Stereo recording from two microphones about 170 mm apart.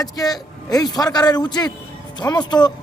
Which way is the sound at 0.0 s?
20° left (ahead or behind).